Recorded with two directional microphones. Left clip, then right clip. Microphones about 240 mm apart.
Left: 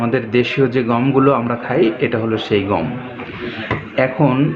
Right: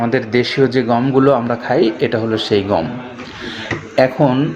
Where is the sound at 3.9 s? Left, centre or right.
Centre.